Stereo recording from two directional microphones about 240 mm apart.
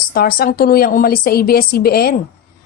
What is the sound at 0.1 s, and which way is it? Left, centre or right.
A woman's voice, left.